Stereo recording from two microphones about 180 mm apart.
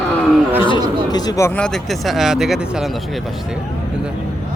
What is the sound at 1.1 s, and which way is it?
Speech, 20° left (ahead or behind).